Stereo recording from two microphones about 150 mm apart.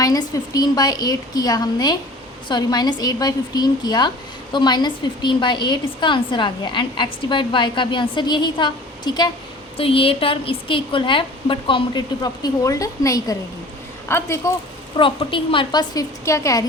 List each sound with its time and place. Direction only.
0.0 s a woman's voice: 25° left (ahead or behind)
9.7 s a woman's voice: 40° left (ahead or behind); by 14.5 s 20° left (ahead or behind)
14.9 s a woman's voice: 35° left (ahead or behind)